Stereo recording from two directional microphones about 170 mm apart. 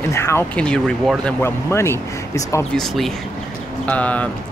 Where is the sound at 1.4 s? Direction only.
15° left (ahead or behind).